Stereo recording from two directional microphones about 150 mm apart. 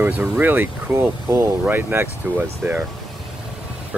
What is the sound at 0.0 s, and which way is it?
Speech, 15° right (ahead or behind).